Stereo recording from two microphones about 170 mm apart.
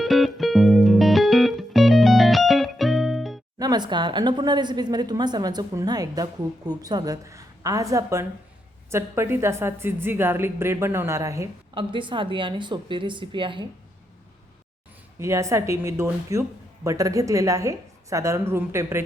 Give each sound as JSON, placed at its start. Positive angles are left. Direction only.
{"t": 0.0, "sound": "music", "side_deg": 0}
{"t": 3.6, "sound": "a woman's voice", "side_deg": -25}
{"t": 11.7, "sound": "speech", "side_deg": -30}
{"t": 15.2, "sound": "a woman's voice", "side_deg": -15}